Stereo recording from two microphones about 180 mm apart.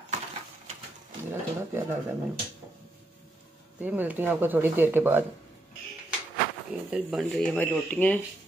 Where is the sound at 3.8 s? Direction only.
10° right (ahead or behind).